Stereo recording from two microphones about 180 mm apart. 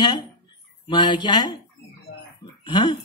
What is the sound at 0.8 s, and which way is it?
Speech, 25° left (ahead or behind).